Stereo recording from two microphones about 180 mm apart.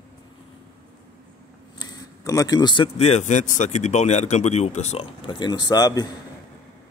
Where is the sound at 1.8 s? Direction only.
20° left (ahead or behind).